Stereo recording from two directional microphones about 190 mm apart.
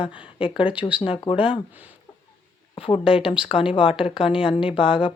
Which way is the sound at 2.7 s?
30° left (ahead or behind).